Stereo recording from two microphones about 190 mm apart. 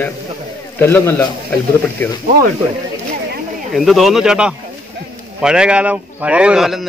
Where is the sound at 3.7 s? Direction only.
Centre (ahead or behind).